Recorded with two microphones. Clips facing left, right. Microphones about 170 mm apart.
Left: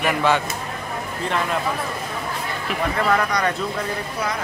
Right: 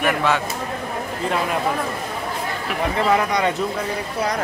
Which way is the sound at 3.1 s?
20° right (ahead or behind).